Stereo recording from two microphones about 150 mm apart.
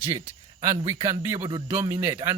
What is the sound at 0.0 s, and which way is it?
Speech, 15° right (ahead or behind).